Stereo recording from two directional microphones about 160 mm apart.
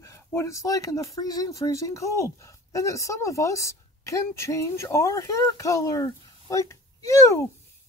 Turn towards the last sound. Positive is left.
turn(degrees=20)  # may be behind; listen again after turning